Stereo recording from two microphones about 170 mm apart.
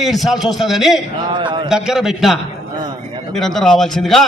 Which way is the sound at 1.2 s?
25° right (ahead or behind).